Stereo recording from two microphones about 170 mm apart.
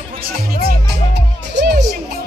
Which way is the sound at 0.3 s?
65° right (ahead or behind).